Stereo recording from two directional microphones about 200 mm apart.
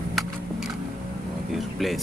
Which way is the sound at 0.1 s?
Centre (ahead or behind).